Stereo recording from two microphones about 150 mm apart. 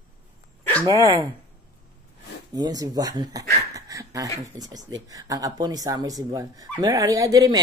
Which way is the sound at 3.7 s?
20° right (ahead or behind).